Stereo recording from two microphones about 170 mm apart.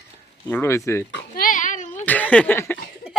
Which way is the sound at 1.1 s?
55° left (ahead or behind).